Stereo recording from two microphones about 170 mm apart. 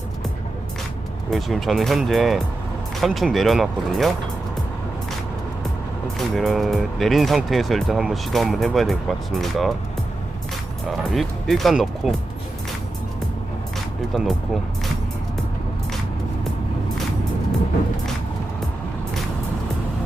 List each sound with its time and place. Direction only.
1.3 s speech: centre (ahead or behind)
6.1 s speech: centre (ahead or behind)
11.1 s speech: centre (ahead or behind)
14.1 s speech: centre (ahead or behind)